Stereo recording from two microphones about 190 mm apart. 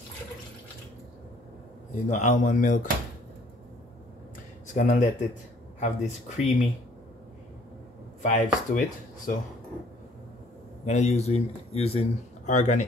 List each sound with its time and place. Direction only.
2.0 s speech: 40° left (ahead or behind)
4.7 s speech: 40° left (ahead or behind)
8.2 s speech: 40° left (ahead or behind)
10.9 s speech: 35° left (ahead or behind)